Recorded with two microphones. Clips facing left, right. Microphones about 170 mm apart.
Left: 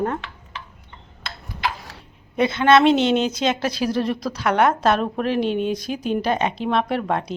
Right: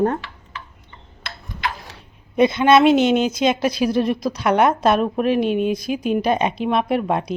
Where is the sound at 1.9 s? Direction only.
15° right (ahead or behind).